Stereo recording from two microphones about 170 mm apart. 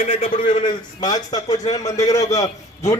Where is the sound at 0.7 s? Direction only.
25° left (ahead or behind).